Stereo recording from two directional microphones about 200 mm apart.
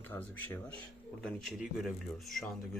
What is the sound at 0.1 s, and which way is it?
Speech, 10° left (ahead or behind).